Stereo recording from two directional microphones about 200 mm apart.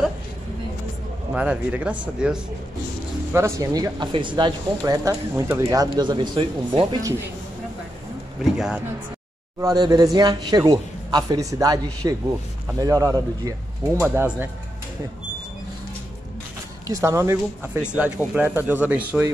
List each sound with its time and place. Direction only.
1.3 s speech: 5° right (ahead or behind)
8.5 s speech: 5° right (ahead or behind)
9.6 s speech: 15° right (ahead or behind)
16.8 s speech: 15° right (ahead or behind)